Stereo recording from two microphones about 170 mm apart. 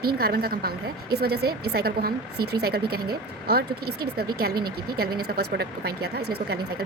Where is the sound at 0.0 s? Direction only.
65° right (ahead or behind).